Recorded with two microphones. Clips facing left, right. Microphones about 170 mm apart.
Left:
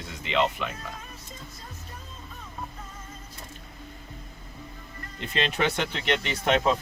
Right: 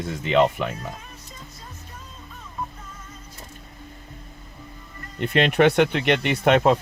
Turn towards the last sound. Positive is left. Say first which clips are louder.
# right 6 dB
turn(degrees=-60)  # may be behind; listen again after turning